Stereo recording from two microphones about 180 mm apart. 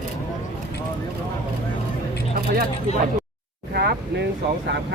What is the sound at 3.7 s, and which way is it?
Speech, 60° right (ahead or behind).